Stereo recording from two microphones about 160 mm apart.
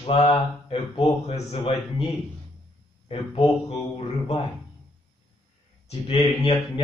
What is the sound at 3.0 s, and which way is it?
Speech, 35° left (ahead or behind).